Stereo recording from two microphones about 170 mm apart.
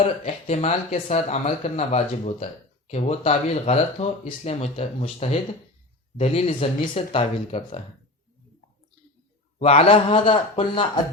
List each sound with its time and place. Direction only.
0.0 s speech: 40° left (ahead or behind)
9.6 s speech: 35° left (ahead or behind)